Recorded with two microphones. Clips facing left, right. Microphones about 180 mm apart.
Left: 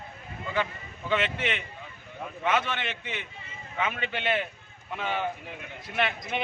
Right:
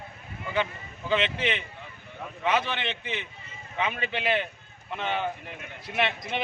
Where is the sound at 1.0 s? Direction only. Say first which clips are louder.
Right 2 dB; centre (ahead or behind).